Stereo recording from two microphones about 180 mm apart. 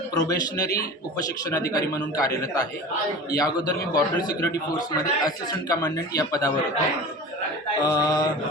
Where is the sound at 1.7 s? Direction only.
20° left (ahead or behind).